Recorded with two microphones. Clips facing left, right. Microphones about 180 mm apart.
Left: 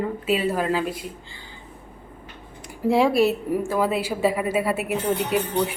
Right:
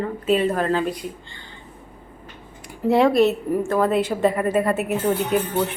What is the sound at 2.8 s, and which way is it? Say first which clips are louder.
A woman's voice: right 2 dB; centre (ahead or behind).